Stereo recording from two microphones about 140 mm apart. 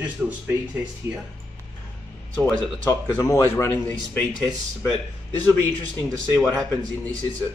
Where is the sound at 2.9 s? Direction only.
20° left (ahead or behind).